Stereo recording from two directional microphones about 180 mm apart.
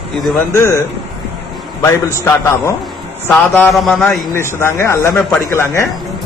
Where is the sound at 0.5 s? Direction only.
15° left (ahead or behind).